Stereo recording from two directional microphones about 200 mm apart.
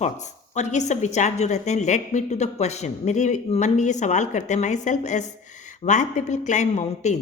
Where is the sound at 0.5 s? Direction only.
35° left (ahead or behind).